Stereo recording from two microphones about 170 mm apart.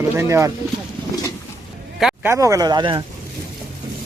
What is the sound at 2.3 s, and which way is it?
Speech, 20° right (ahead or behind).